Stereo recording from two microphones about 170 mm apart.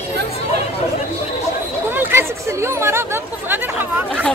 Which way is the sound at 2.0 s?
15° right (ahead or behind).